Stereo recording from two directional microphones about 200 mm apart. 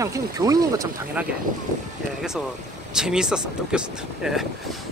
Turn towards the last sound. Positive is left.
turn(degrees=0)  # may be behind; listen again after turning